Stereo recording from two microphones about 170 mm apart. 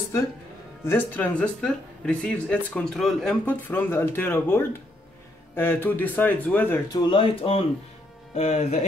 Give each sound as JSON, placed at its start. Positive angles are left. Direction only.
{"t": 0.8, "sound": "speech", "side_deg": 10}
{"t": 6.9, "sound": "speech", "side_deg": 30}